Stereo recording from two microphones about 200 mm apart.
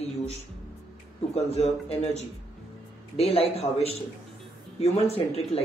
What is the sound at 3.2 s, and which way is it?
Speech, 30° left (ahead or behind).